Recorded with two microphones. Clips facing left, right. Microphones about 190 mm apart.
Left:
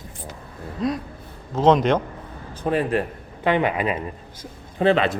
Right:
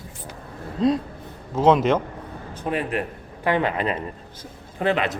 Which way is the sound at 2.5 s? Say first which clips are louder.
Left 4 dB; 35° left (ahead or behind).